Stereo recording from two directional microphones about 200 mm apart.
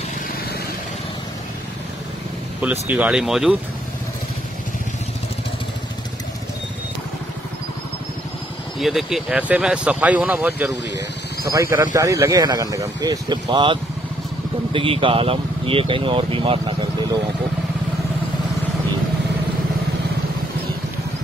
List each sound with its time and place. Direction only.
2.6 s speech: 10° right (ahead or behind)
8.7 s speech: centre (ahead or behind); by 17.2 s 25° right (ahead or behind)